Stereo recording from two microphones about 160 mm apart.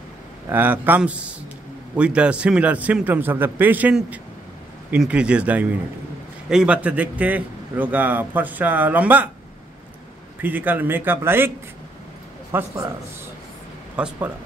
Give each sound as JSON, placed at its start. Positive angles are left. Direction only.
{"t": 0.5, "sound": "a man's voice", "side_deg": -10}
{"t": 10.4, "sound": "a man's voice", "side_deg": -10}
{"t": 12.5, "sound": "a man's voice", "side_deg": -15}
{"t": 13.9, "sound": "a man's voice", "side_deg": -10}